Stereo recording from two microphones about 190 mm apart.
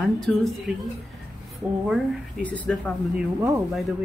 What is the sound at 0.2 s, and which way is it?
Speech, centre (ahead or behind).